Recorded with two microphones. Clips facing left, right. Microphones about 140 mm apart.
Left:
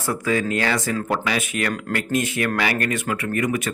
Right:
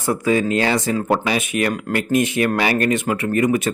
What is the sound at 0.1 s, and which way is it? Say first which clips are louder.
A man's voice: right 4 dB; 20° right (ahead or behind).